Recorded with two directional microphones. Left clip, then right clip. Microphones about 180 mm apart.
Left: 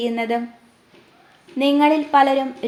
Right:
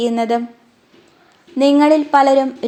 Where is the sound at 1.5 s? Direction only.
35° right (ahead or behind).